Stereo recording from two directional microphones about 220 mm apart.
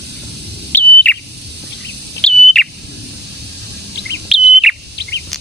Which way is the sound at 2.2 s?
Centre (ahead or behind).